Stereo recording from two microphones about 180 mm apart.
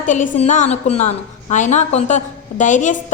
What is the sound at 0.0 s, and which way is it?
A woman's voice, 45° left (ahead or behind).